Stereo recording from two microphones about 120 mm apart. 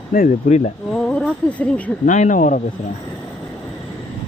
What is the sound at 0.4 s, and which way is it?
Speech, 90° left.